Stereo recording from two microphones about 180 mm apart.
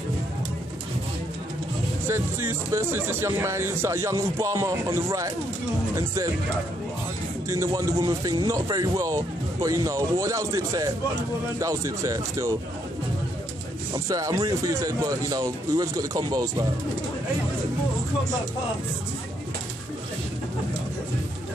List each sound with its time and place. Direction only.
2.0 s speech: 15° right (ahead or behind)
7.4 s speech: 15° right (ahead or behind)
13.9 s speech: 20° right (ahead or behind)